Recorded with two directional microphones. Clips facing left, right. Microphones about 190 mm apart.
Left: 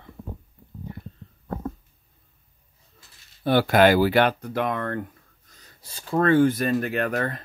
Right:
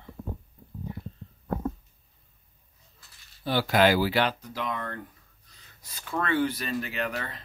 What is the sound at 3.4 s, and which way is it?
Speech, 55° left (ahead or behind).